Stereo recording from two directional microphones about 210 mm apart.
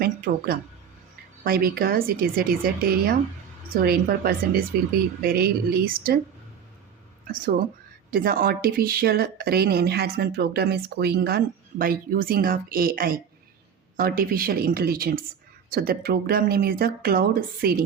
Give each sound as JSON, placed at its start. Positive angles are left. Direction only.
{"t": 0.0, "sound": "a woman's voice", "side_deg": -45}
{"t": 7.3, "sound": "a woman's voice", "side_deg": -45}